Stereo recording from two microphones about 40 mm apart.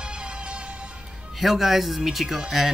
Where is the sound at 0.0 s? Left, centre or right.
Right.